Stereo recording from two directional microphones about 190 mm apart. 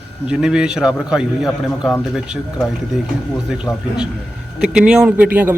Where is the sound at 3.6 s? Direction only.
5° right (ahead or behind).